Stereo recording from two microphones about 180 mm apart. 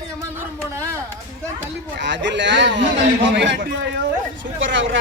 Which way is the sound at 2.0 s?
80° right.